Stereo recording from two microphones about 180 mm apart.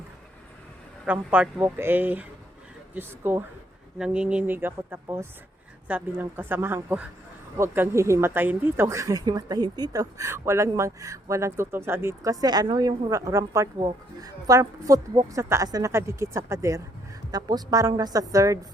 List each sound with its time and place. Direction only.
1.0 s a woman's voice: 10° right (ahead or behind)